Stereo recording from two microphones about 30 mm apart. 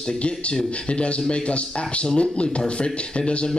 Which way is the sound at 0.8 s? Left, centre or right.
Left.